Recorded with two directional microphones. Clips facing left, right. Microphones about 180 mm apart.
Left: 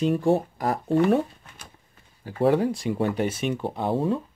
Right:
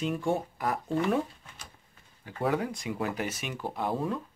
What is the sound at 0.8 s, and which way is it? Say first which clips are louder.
Speech: left 9 dB; 60° left (ahead or behind).